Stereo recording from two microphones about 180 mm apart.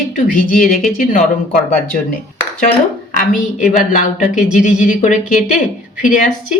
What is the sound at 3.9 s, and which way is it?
Speech, 45° left (ahead or behind).